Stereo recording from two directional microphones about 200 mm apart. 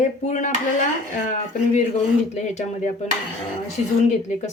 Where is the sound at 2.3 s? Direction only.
35° left (ahead or behind).